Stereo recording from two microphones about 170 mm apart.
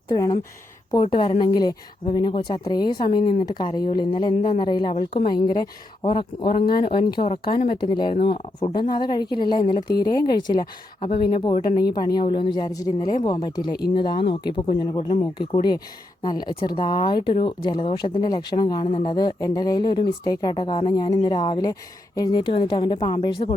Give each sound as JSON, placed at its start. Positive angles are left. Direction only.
{"t": 0.1, "sound": "speech", "side_deg": 25}
{"t": 16.2, "sound": "speech", "side_deg": 25}